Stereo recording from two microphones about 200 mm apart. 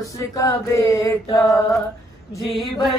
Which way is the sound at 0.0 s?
15° left (ahead or behind).